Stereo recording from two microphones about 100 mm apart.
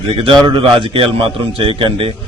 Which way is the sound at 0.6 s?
65° right (ahead or behind).